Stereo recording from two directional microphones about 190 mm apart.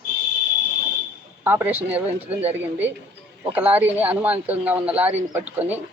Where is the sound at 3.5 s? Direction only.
10° right (ahead or behind).